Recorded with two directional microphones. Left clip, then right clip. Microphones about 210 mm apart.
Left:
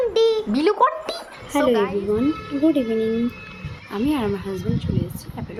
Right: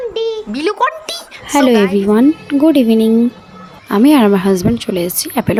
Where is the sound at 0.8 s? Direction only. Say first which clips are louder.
Right 4 dB; 20° right (ahead or behind).